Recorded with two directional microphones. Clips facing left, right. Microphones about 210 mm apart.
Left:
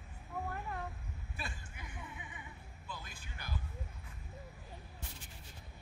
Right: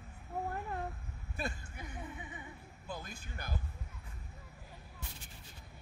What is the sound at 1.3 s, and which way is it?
Music, 40° right (ahead or behind).